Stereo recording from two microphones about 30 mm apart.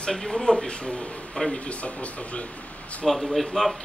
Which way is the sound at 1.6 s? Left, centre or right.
Left.